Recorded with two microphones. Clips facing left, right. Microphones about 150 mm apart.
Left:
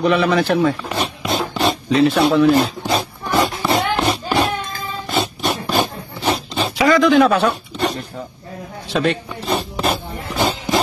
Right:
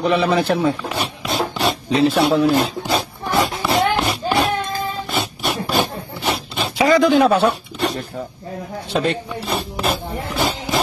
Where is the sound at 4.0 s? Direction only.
Centre (ahead or behind).